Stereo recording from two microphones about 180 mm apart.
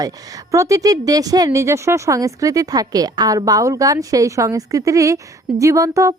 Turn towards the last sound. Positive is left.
turn(degrees=-20)  # may be behind; listen again after turning